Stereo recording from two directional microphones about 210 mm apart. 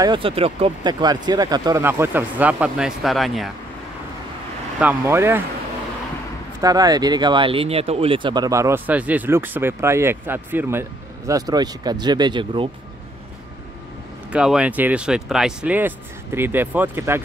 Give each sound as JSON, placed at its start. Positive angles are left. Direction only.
{"t": 0.0, "sound": "speech", "side_deg": -25}
{"t": 4.7, "sound": "speech", "side_deg": -10}
{"t": 6.6, "sound": "speech", "side_deg": -15}
{"t": 14.3, "sound": "speech", "side_deg": -5}